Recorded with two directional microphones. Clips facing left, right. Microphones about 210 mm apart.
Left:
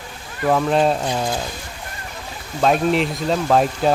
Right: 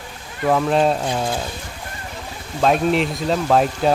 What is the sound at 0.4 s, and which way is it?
Speech, centre (ahead or behind).